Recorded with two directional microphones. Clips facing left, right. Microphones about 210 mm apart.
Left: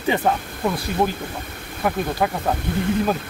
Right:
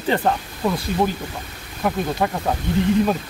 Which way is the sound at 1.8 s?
Centre (ahead or behind).